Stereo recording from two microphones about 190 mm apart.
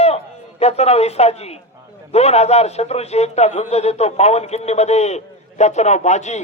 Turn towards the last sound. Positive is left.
turn(degrees=40)  # may be behind; listen again after turning